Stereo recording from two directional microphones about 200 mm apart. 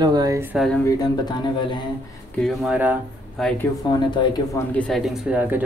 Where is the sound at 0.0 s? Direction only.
20° right (ahead or behind).